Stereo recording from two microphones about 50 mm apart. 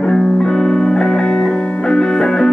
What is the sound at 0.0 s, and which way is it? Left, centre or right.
Music, centre.